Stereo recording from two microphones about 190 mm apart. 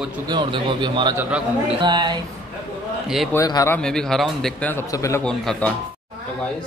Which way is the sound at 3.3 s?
20° left (ahead or behind).